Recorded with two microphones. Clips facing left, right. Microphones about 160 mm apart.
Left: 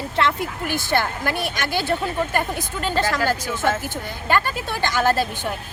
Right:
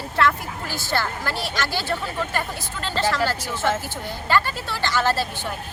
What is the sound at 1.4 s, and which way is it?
Speech, 55° left (ahead or behind).